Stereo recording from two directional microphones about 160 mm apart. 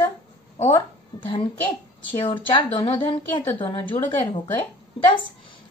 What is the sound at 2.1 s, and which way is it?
A woman's voice, 30° left (ahead or behind).